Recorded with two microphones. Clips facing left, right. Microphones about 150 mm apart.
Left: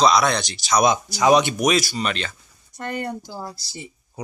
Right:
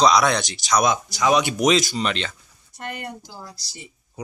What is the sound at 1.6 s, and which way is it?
Speech, 20° right (ahead or behind).